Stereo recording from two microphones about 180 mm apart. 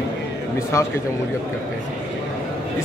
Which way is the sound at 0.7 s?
15° left (ahead or behind).